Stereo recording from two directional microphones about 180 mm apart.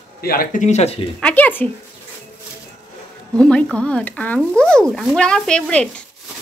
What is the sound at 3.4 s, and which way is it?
Speech, 5° left (ahead or behind).